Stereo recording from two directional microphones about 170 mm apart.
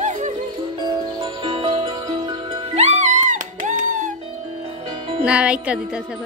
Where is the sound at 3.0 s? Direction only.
45° right (ahead or behind).